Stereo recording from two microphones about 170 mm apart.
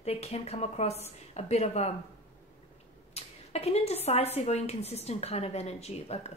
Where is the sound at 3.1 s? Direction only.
40° left (ahead or behind).